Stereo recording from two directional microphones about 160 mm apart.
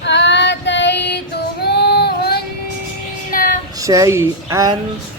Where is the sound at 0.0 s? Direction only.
90° left.